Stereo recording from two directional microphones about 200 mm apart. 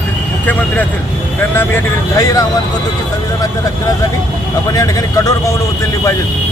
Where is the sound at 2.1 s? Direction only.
15° left (ahead or behind).